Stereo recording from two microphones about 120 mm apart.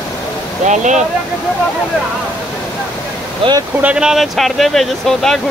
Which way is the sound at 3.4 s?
50° right (ahead or behind).